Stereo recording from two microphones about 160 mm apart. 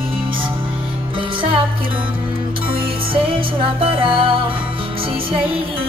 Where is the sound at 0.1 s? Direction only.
30° right (ahead or behind).